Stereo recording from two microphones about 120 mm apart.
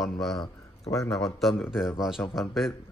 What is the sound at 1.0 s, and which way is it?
Speech, centre (ahead or behind).